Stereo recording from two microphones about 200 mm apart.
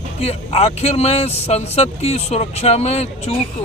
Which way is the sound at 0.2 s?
30° left (ahead or behind).